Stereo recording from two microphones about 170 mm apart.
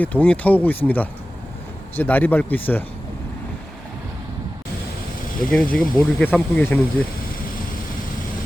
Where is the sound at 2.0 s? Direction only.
10° left (ahead or behind).